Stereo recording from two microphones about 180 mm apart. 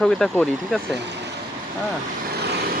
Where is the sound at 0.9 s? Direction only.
75° right (ahead or behind).